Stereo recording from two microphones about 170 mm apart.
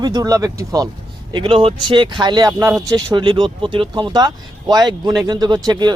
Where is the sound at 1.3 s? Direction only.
30° right (ahead or behind).